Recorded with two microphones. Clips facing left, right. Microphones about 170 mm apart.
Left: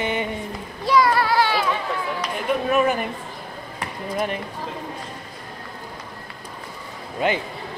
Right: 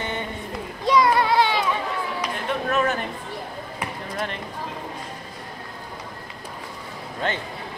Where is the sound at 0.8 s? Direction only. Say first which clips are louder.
Even; 20° right (ahead or behind).